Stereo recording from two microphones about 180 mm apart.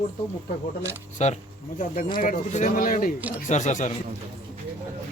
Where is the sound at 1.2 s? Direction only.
40° left (ahead or behind).